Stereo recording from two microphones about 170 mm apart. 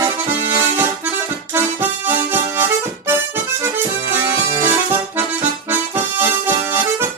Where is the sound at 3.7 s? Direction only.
15° right (ahead or behind).